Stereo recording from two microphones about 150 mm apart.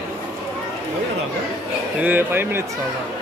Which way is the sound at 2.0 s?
15° right (ahead or behind).